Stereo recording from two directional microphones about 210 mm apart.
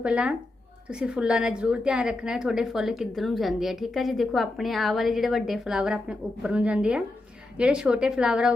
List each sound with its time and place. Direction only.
0.0 s a woman's voice: 5° right (ahead or behind)